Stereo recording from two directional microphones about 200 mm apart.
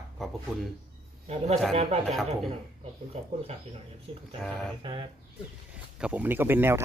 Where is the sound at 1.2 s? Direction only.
30° right (ahead or behind).